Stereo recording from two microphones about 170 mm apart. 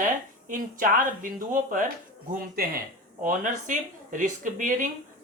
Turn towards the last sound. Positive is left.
turn(degrees=-50)  # may be behind; listen again after turning